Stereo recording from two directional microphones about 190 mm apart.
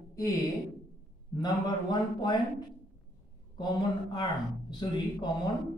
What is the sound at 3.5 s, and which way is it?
Speech, 25° left (ahead or behind).